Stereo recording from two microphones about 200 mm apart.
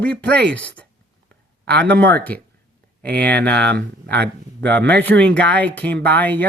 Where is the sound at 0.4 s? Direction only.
5° left (ahead or behind).